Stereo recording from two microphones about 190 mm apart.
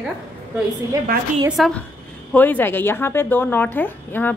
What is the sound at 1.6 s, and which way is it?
A woman's voice, centre (ahead or behind).